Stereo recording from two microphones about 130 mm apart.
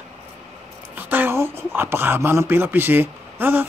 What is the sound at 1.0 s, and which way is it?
Speech, 15° right (ahead or behind).